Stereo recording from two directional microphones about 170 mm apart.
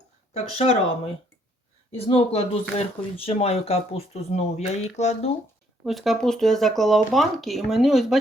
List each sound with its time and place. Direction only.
0.3 s speech: 35° left (ahead or behind)
1.9 s speech: 35° left (ahead or behind)
5.8 s speech: centre (ahead or behind)